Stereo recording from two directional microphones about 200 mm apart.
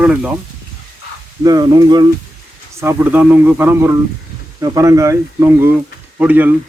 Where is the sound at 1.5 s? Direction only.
20° right (ahead or behind).